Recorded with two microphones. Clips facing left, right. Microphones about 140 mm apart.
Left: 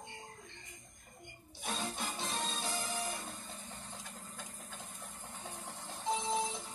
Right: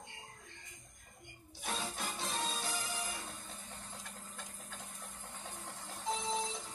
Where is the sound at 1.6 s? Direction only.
Centre (ahead or behind).